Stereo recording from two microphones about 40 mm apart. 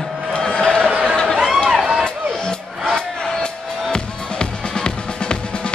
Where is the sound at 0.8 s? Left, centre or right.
Centre.